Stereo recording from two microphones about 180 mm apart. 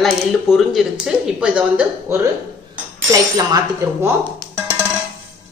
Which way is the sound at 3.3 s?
20° right (ahead or behind).